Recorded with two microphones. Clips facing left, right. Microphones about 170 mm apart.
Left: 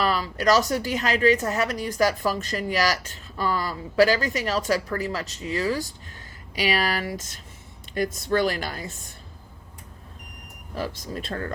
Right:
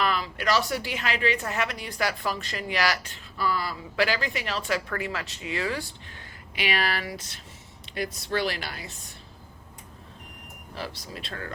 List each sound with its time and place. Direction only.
0.0 s a woman's voice: 40° left (ahead or behind)
10.8 s a woman's voice: 45° left (ahead or behind)